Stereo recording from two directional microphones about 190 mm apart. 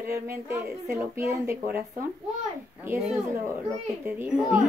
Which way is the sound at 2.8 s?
10° right (ahead or behind).